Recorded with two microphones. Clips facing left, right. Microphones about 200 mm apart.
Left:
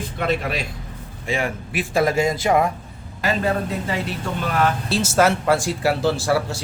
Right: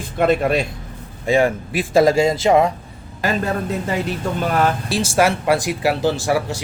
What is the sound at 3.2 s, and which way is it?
Speech, 45° right (ahead or behind).